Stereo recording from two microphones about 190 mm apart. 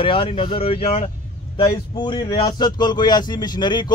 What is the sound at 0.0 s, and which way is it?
A man's voice, 25° left (ahead or behind).